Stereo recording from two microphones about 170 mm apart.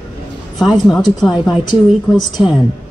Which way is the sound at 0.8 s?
Centre (ahead or behind).